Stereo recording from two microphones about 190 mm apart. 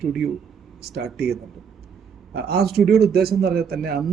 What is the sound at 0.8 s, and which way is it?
Speech, 55° right (ahead or behind).